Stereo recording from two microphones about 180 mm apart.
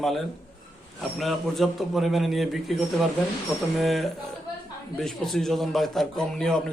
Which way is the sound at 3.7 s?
Centre (ahead or behind).